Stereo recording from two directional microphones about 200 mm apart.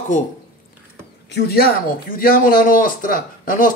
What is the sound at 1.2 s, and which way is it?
Speech, 55° left (ahead or behind).